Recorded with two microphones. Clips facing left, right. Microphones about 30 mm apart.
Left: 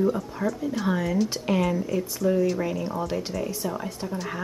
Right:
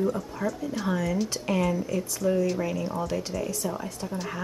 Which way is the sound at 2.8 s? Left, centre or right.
Centre.